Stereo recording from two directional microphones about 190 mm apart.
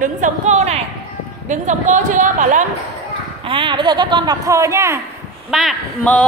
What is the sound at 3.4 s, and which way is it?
Speech, 25° right (ahead or behind).